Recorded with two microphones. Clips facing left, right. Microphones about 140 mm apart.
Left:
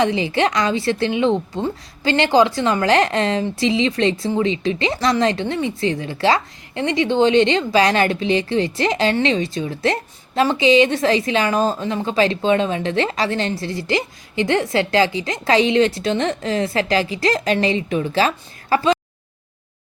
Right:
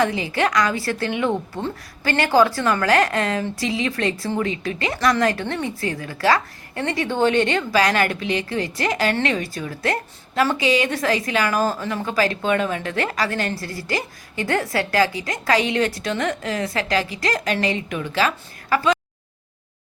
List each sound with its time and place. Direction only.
0.0 s a woman's voice: 25° left (ahead or behind)